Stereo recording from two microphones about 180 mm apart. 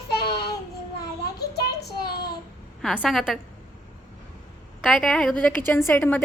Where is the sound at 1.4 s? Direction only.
65° left (ahead or behind).